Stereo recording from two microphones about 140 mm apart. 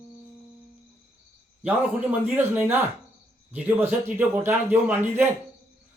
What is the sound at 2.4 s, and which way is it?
A man's voice, 15° right (ahead or behind).